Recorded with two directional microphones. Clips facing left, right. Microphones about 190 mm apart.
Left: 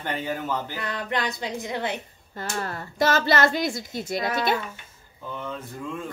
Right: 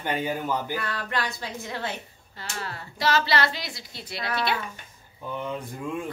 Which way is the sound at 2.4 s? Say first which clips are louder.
Left 5 dB; 50° left (ahead or behind).